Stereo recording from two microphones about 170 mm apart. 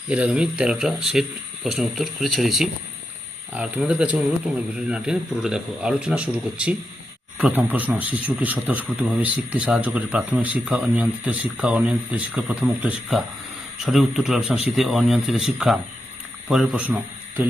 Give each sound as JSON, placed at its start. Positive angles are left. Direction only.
{"t": 0.1, "sound": "speech", "side_deg": -5}